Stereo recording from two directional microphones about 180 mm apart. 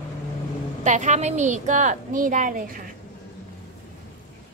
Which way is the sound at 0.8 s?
40° right (ahead or behind).